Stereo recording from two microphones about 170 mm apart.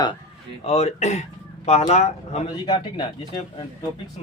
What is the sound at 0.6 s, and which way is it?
Speech, 40° left (ahead or behind).